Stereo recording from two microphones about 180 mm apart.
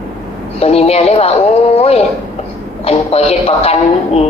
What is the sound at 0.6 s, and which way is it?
Speech, 35° left (ahead or behind).